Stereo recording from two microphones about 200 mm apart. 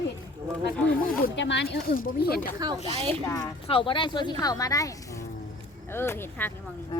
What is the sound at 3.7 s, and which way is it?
A woman's voice, 25° left (ahead or behind).